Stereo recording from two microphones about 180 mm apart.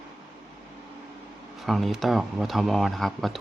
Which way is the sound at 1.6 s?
Centre (ahead or behind).